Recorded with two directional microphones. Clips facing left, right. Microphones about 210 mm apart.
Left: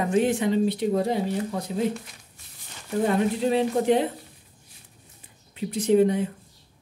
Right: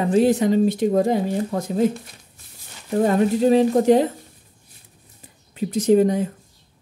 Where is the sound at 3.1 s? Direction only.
40° right (ahead or behind).